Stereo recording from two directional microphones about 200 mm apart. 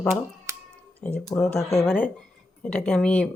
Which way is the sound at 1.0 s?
5° left (ahead or behind).